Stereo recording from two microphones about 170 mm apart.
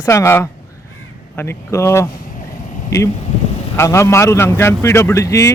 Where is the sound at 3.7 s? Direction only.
15° left (ahead or behind).